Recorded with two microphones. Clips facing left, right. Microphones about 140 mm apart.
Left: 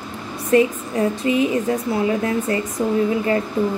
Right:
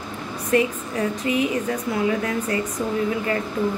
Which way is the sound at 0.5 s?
30° left (ahead or behind).